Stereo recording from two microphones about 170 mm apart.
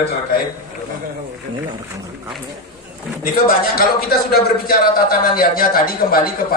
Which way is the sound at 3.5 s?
60° left (ahead or behind).